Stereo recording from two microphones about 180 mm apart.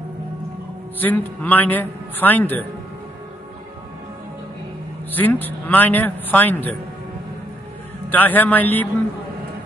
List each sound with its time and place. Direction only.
0.9 s a man's voice: 10° left (ahead or behind)
5.1 s a man's voice: 10° left (ahead or behind)
8.1 s a man's voice: 10° left (ahead or behind)